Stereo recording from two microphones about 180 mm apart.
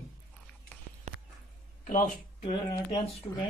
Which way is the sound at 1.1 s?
40° right (ahead or behind).